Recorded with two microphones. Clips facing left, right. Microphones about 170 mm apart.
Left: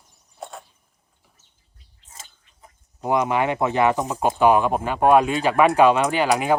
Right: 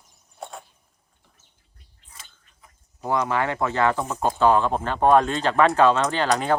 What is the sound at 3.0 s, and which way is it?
Speech, 15° left (ahead or behind).